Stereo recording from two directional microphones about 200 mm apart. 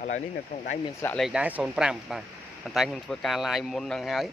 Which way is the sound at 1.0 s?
Centre (ahead or behind).